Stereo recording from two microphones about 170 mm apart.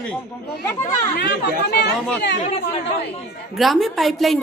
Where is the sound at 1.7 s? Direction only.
75° left (ahead or behind).